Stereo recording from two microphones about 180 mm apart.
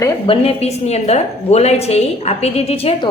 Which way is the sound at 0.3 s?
35° left (ahead or behind).